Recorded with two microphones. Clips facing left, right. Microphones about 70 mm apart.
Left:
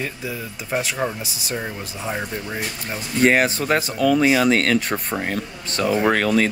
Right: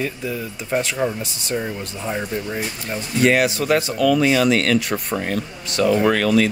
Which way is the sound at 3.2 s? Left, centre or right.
Left.